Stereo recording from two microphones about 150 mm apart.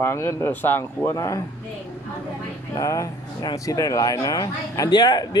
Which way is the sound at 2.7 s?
20° left (ahead or behind).